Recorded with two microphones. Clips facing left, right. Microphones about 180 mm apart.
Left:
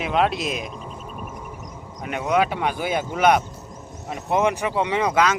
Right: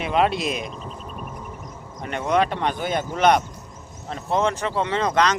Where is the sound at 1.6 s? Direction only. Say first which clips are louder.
Left 1 dB; 10° left (ahead or behind).